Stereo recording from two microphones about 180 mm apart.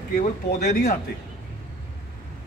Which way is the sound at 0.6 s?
65° left (ahead or behind).